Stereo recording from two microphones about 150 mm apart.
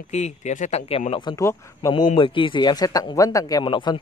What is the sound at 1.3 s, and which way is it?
Speech, 20° left (ahead or behind).